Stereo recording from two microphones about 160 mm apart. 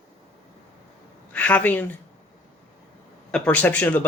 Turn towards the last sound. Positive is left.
turn(degrees=10)  # may be behind; listen again after turning